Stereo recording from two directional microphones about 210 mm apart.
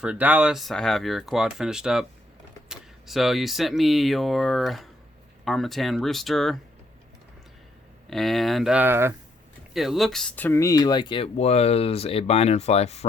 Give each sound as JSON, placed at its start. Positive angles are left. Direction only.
{"t": 0.0, "sound": "speech", "side_deg": -5}
{"t": 8.1, "sound": "speech", "side_deg": 0}
{"t": 9.7, "sound": "speech", "side_deg": 0}